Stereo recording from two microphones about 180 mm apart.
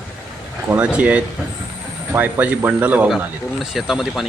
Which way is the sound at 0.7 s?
5° right (ahead or behind).